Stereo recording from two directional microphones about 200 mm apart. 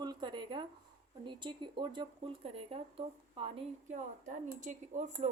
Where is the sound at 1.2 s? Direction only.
25° right (ahead or behind).